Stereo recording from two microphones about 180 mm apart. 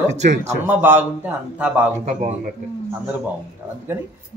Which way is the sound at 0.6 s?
10° right (ahead or behind).